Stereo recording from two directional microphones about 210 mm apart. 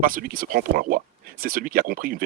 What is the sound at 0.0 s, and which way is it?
Speech, 40° right (ahead or behind).